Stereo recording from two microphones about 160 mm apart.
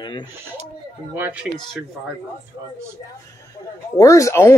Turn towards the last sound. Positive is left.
turn(degrees=20)  # may be behind; listen again after turning